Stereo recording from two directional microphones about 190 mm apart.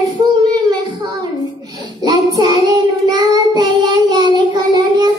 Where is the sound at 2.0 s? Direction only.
20° right (ahead or behind).